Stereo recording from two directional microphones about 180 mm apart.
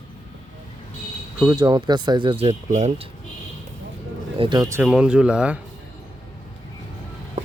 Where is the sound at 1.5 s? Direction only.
25° right (ahead or behind).